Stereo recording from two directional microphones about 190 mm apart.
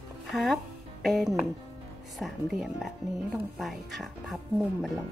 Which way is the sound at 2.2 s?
Centre (ahead or behind).